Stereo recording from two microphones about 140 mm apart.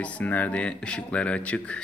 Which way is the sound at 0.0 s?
10° left (ahead or behind).